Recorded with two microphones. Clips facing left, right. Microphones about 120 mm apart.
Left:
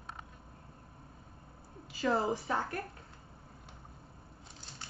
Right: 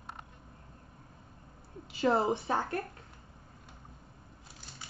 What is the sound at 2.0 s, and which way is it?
Speech, 25° right (ahead or behind).